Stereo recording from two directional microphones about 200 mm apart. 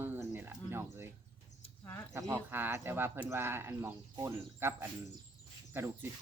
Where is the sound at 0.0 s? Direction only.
10° right (ahead or behind).